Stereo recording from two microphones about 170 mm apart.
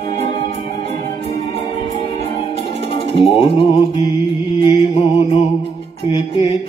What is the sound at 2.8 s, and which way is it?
Music, 35° left (ahead or behind).